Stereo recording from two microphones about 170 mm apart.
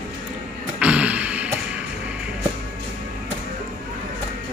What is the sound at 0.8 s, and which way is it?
Music, 5° right (ahead or behind).